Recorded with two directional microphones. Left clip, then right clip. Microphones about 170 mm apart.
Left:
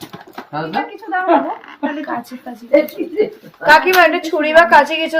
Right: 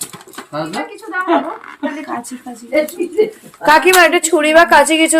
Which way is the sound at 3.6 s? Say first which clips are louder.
Right 1 dB; 75° right (ahead or behind).